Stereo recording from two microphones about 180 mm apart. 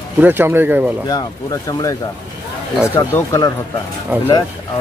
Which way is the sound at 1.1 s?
20° left (ahead or behind).